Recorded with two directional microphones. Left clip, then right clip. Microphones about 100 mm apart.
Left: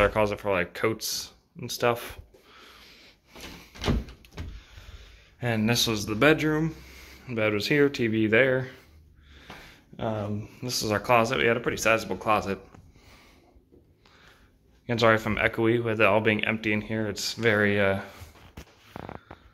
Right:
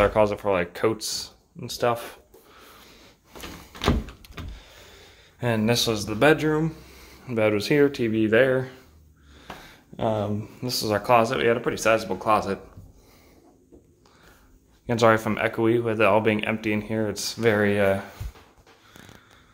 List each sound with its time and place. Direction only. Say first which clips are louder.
0.0 s speech: right 3 dB; 15° right (ahead or behind); by 2.1 s centre (ahead or behind)
2.5 s a sound: even; 20° right (ahead or behind)
5.4 s speech: right 3 dB; 15° right (ahead or behind)
6.9 s a sound: right 3 dB; 15° right (ahead or behind)
7.9 s speech: right 2 dB; 10° left (ahead or behind)
9.9 s speech: right 6 dB; 35° right (ahead or behind)
10.6 s speech: right 2 dB; 10° right (ahead or behind)
10.9 s speech: right 3 dB; centre (ahead or behind)
14.9 s speech: right 3 dB; 15° right (ahead or behind)